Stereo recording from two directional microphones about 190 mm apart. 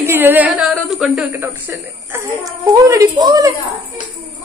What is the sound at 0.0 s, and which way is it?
A woman's voice, 10° right (ahead or behind).